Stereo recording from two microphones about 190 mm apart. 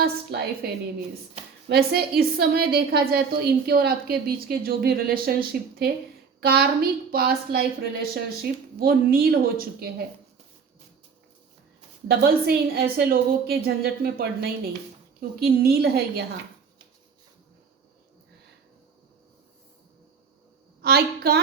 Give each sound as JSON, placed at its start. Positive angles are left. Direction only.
{"t": 0.0, "sound": "a woman's voice", "side_deg": -55}
{"t": 1.7, "sound": "a woman's voice", "side_deg": -55}
{"t": 12.0, "sound": "a woman's voice", "side_deg": -55}
{"t": 20.8, "sound": "a woman's voice", "side_deg": -55}